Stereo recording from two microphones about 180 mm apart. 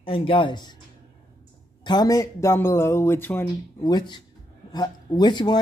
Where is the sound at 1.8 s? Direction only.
25° left (ahead or behind).